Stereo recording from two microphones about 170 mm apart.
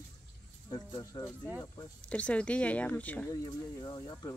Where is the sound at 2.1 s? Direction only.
5° left (ahead or behind).